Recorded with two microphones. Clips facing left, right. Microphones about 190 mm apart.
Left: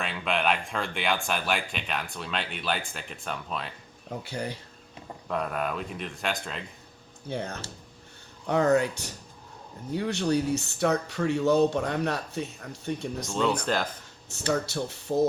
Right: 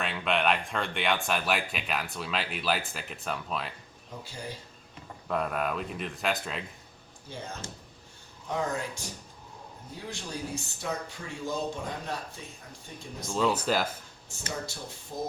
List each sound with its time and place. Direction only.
0.0 s speech: centre (ahead or behind)
4.2 s speech: 65° left (ahead or behind)
5.3 s speech: centre (ahead or behind)
7.3 s speech: 65° left (ahead or behind)
13.1 s speech: 5° right (ahead or behind)
14.3 s speech: 70° left (ahead or behind)